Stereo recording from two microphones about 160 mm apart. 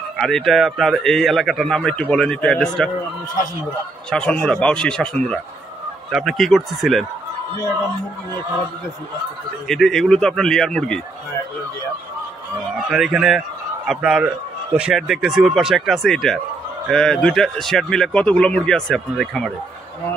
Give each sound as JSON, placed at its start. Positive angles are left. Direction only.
{"t": 0.2, "sound": "speech", "side_deg": 0}
{"t": 4.1, "sound": "a man's voice", "side_deg": 5}
{"t": 9.7, "sound": "speech", "side_deg": 0}
{"t": 12.7, "sound": "speech", "side_deg": 0}